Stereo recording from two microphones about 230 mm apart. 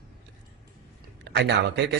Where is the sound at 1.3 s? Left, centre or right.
Right.